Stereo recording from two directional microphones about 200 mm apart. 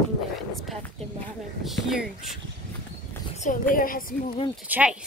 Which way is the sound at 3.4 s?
45° left (ahead or behind).